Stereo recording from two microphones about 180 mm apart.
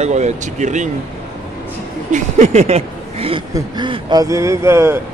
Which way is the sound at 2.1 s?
40° right (ahead or behind).